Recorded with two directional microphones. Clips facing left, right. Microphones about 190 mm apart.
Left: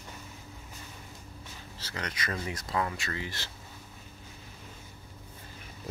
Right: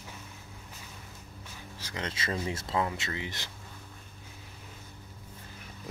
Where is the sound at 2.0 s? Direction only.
25° right (ahead or behind).